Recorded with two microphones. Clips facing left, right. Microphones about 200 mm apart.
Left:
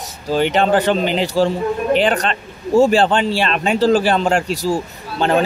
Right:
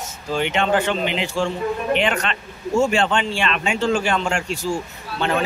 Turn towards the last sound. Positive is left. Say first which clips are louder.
# left 6 dB
turn(degrees=35)  # may be behind; listen again after turning